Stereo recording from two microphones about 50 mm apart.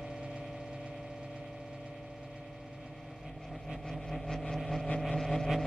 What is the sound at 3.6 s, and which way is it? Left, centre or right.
Vehicle, centre.